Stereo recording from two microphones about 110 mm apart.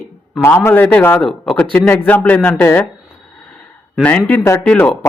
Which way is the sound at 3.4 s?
10° left (ahead or behind).